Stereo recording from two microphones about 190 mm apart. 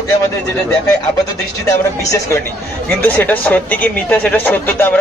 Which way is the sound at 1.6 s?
15° left (ahead or behind).